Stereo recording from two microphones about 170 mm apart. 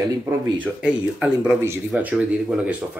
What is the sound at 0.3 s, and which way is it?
Speech, 10° right (ahead or behind).